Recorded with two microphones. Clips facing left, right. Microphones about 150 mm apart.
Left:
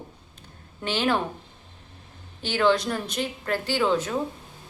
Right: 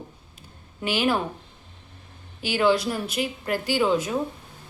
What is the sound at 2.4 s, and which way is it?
A woman's voice, 10° right (ahead or behind).